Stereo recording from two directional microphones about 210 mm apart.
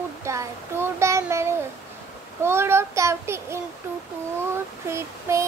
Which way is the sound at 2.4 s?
10° right (ahead or behind).